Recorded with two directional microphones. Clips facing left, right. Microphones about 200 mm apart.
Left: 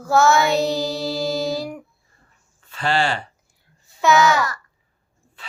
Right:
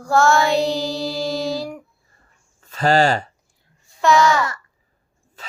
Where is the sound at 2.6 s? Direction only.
40° right (ahead or behind).